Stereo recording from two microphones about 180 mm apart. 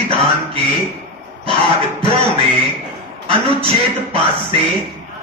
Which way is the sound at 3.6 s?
30° right (ahead or behind).